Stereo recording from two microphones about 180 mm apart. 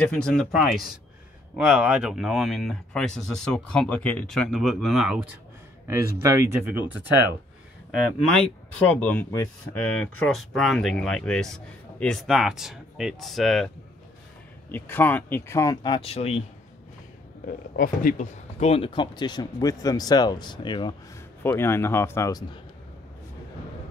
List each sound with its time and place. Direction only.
0.0 s speech: 5° left (ahead or behind)
1.7 s speech: 5° right (ahead or behind)
5.9 s speech: 15° right (ahead or behind)
8.8 s speech: 10° left (ahead or behind)
14.7 s speech: 10° left (ahead or behind); by 16.4 s 35° left (ahead or behind)
17.5 s speech: 50° left (ahead or behind); by 20.9 s 25° left (ahead or behind)
21.4 s speech: 15° left (ahead or behind)